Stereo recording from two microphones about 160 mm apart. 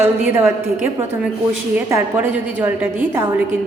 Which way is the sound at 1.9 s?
15° right (ahead or behind).